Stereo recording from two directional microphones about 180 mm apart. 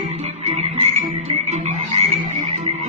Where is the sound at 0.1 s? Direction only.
35° right (ahead or behind).